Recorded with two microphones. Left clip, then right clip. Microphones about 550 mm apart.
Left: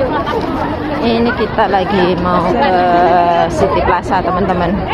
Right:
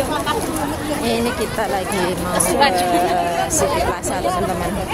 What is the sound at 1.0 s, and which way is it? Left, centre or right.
A woman's voice, right.